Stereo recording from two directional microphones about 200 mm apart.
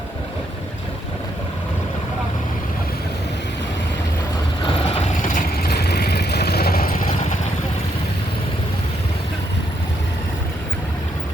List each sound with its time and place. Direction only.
4.6 s vehicle: 35° left (ahead or behind)